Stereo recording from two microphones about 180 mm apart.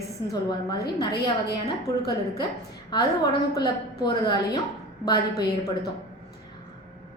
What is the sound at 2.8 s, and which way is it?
A woman's voice, 25° left (ahead or behind).